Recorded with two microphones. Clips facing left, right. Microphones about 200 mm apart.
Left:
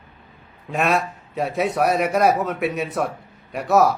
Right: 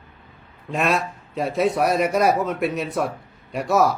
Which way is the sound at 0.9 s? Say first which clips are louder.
Left 1 dB; 65° left (ahead or behind).